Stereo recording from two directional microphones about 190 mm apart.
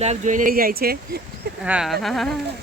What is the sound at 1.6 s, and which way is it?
Speech, 5° right (ahead or behind).